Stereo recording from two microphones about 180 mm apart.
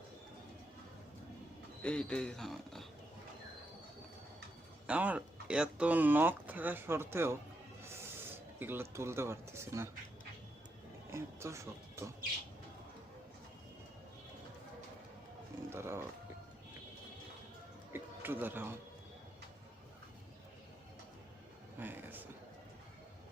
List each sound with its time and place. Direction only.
1.8 s speech: 5° left (ahead or behind)
4.9 s speech: 10° right (ahead or behind)
11.1 s speech: 15° right (ahead or behind)
15.7 s speech: 15° right (ahead or behind)
17.9 s a sound: 10° right (ahead or behind)
21.8 s a sound: 10° right (ahead or behind)